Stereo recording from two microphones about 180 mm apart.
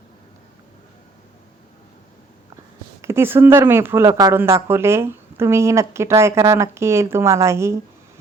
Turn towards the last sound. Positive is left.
turn(degrees=-15)  # may be behind; listen again after turning